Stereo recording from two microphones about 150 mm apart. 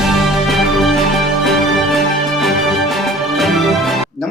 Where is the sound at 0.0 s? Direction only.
Centre (ahead or behind).